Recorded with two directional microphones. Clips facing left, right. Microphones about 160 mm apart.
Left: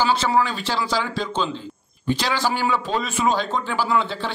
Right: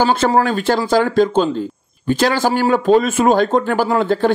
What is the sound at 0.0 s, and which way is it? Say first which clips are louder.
Speech: right 5 dB; 50° right (ahead or behind).